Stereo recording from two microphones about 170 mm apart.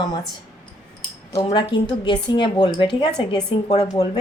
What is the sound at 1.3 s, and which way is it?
A woman's voice, 30° left (ahead or behind).